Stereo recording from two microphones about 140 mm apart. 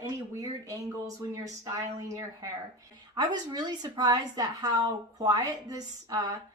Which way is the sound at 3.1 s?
30° right (ahead or behind).